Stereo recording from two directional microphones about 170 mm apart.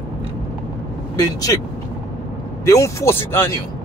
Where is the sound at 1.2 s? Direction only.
20° left (ahead or behind).